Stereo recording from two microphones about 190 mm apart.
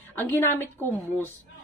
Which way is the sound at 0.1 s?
10° left (ahead or behind).